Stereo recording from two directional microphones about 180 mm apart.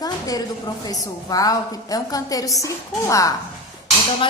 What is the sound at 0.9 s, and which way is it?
A woman's voice, 20° left (ahead or behind).